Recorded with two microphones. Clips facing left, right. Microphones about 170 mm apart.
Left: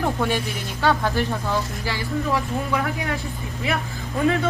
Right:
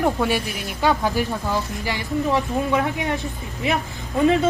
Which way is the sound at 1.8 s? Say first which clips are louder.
Right 4 dB; 20° right (ahead or behind).